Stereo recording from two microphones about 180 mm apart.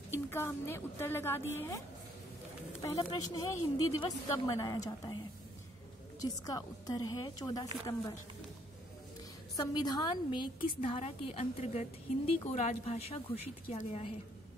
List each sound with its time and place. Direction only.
0.1 s a woman's voice: 15° left (ahead or behind)
2.8 s speech: 20° left (ahead or behind)
6.2 s speech: 20° left (ahead or behind)
9.6 s a woman's voice: 20° left (ahead or behind)